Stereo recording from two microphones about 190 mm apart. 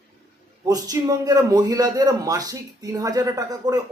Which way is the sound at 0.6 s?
20° right (ahead or behind).